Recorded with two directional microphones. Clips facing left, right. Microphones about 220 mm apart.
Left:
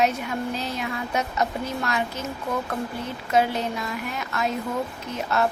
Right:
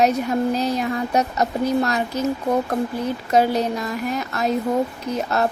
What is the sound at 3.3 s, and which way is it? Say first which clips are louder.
Speech: right 4 dB; 40° right (ahead or behind).